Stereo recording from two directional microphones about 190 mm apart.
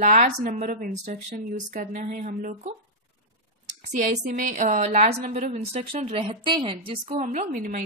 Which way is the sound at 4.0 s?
40° right (ahead or behind).